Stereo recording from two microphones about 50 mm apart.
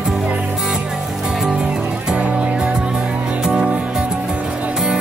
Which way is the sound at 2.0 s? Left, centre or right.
Right.